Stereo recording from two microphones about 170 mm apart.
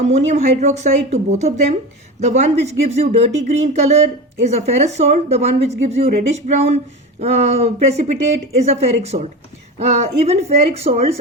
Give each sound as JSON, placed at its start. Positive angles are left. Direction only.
{"t": 0.0, "sound": "speech", "side_deg": -40}